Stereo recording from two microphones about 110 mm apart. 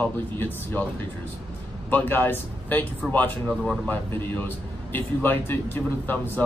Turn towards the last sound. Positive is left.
turn(degrees=20)  # may be behind; listen again after turning